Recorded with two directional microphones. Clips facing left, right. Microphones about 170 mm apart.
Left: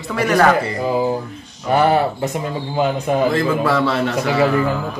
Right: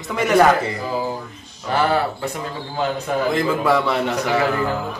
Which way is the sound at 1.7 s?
20° left (ahead or behind).